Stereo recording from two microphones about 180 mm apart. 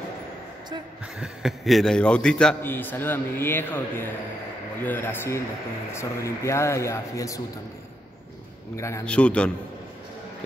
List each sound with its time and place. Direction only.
1.2 s a man's voice: centre (ahead or behind); by 7.4 s 20° left (ahead or behind)
8.7 s a man's voice: 15° left (ahead or behind)
9.0 s a man's voice: 5° left (ahead or behind)